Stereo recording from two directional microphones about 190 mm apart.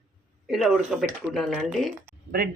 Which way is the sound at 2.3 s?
55° right (ahead or behind).